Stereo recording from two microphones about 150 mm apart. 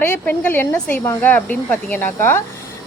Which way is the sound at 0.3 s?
15° left (ahead or behind).